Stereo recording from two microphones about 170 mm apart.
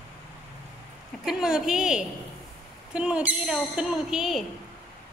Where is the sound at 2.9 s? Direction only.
5° right (ahead or behind).